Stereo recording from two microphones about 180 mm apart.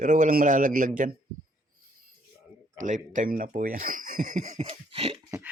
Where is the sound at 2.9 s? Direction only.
45° right (ahead or behind).